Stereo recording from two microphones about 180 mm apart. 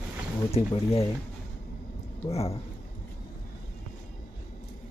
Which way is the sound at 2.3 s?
35° left (ahead or behind).